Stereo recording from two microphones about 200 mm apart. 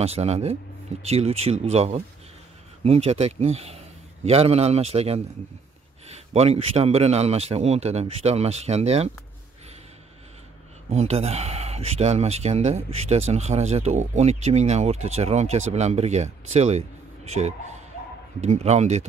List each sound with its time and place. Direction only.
0.0 s a man's voice: 30° right (ahead or behind)
10.9 s speech: 30° right (ahead or behind)